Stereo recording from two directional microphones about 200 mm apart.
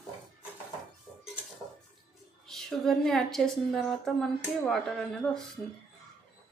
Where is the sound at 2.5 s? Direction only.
Centre (ahead or behind).